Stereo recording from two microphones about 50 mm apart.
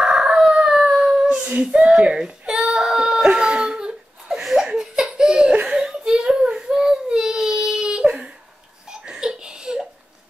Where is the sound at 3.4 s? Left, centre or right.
Centre.